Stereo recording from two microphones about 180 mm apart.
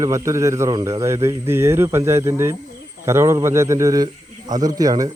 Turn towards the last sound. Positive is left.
turn(degrees=-20)  # may be behind; listen again after turning